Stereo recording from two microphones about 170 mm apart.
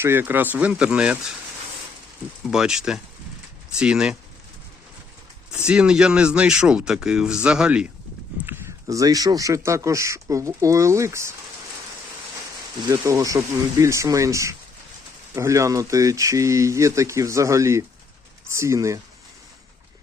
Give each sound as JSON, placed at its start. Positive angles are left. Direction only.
{"t": 0.0, "sound": "speech", "side_deg": -15}
{"t": 2.5, "sound": "speech", "side_deg": -5}
{"t": 5.6, "sound": "speech", "side_deg": -5}
{"t": 8.4, "sound": "speech", "side_deg": -15}
{"t": 12.9, "sound": "speech", "side_deg": -20}